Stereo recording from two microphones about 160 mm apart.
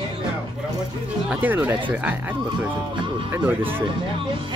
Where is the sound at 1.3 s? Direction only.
10° right (ahead or behind).